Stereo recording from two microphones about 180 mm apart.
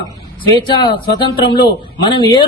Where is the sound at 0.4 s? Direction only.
25° left (ahead or behind).